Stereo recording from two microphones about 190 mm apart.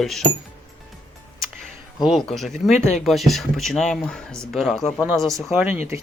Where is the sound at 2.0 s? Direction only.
Centre (ahead or behind).